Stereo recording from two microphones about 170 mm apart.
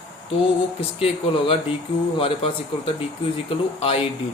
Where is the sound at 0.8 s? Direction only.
35° left (ahead or behind).